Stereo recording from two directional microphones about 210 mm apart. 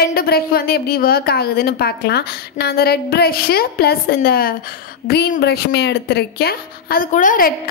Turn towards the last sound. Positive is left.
turn(degrees=40)  # may be behind; listen again after turning